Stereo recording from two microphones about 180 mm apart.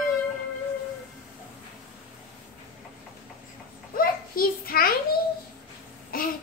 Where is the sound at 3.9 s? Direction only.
55° left (ahead or behind).